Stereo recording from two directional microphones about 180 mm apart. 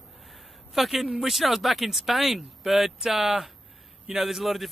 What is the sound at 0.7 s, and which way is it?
Speech, centre (ahead or behind).